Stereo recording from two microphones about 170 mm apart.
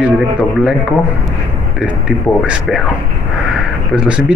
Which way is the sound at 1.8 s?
5° right (ahead or behind).